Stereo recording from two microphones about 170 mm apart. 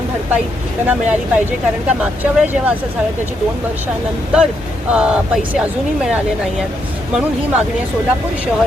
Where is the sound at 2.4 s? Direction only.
10° right (ahead or behind).